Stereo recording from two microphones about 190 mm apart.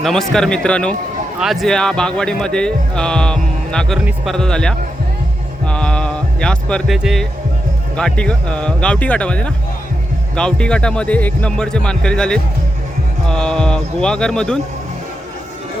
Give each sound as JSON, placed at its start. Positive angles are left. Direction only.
{"t": 0.0, "sound": "speech", "side_deg": 0}